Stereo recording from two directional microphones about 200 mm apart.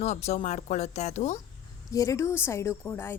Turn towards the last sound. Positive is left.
turn(degrees=10)  # may be behind; listen again after turning